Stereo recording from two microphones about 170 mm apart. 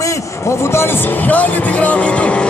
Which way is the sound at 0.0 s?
15° left (ahead or behind).